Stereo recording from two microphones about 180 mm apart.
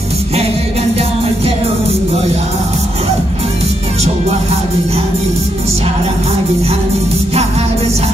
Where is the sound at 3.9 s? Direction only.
35° right (ahead or behind).